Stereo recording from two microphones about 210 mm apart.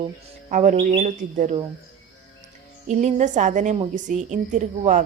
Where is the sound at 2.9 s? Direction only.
35° right (ahead or behind).